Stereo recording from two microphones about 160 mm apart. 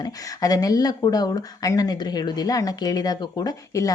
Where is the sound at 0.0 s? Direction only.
20° left (ahead or behind).